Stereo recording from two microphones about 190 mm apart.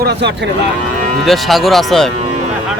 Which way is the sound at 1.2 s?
Centre (ahead or behind).